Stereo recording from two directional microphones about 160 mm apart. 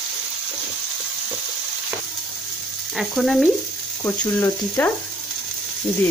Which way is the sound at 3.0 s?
Centre (ahead or behind).